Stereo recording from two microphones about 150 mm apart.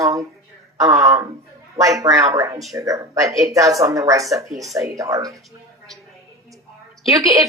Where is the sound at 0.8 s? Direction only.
20° right (ahead or behind).